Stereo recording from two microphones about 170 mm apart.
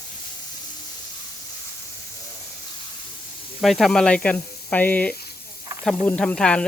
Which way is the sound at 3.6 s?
Centre (ahead or behind).